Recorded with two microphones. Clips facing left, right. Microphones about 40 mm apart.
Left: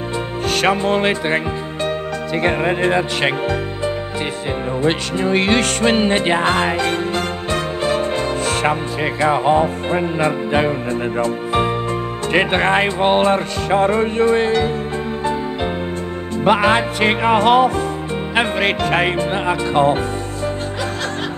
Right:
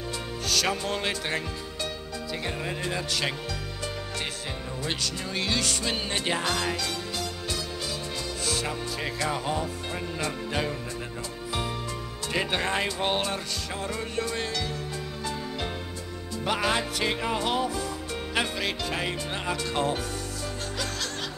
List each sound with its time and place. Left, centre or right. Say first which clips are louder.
0.5 s speech: left 11 dB; left
2.3 s music: left 15 dB; left
4.8 s music: left 14 dB; left
9.2 s speech: left 15 dB; left
16.4 s music: left 12 dB; left
19.3 s speech: left 12 dB; left